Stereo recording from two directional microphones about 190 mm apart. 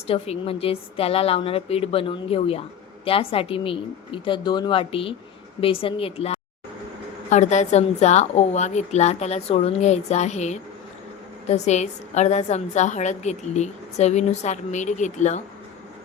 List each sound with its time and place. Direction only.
0.1 s a woman's voice: 30° left (ahead or behind)